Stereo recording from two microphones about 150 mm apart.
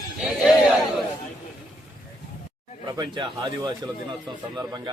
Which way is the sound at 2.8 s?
30° right (ahead or behind).